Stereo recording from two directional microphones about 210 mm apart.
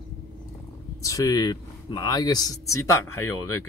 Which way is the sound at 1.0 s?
15° left (ahead or behind).